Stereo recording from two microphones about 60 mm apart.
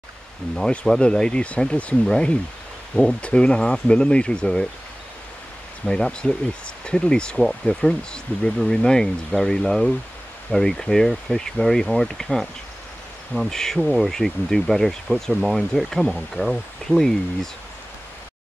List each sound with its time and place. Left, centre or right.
0.7 s speech: centre
5.9 s speech: centre
13.7 s speech: centre